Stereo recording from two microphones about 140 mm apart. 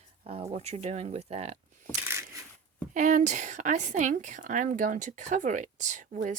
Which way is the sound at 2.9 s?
65° right (ahead or behind).